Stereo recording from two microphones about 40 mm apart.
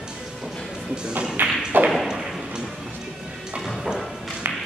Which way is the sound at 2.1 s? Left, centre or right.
Centre.